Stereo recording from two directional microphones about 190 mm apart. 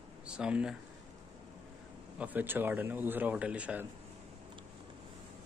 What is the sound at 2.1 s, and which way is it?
Speech, 10° right (ahead or behind).